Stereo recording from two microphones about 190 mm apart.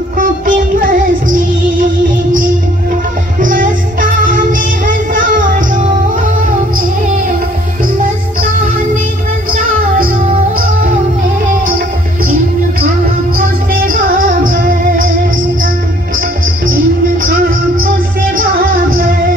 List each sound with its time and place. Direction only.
0.2 s music: 45° right (ahead or behind)
3.3 s music: 45° right (ahead or behind)
9.5 s music: 45° right (ahead or behind)
13.7 s music: 50° right (ahead or behind)